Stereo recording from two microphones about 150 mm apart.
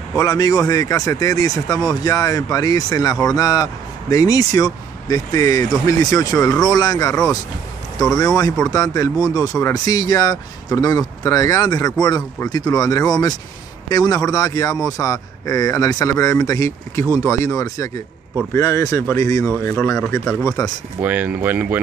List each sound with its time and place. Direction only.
0.2 s speech: 25° left (ahead or behind)
8.6 s speech: 25° left (ahead or behind)
21.0 s speech: 10° right (ahead or behind)